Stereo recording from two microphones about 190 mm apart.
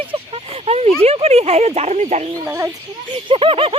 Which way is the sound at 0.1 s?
30° right (ahead or behind).